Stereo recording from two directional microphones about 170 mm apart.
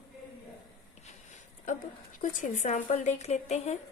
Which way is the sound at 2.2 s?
45° left (ahead or behind).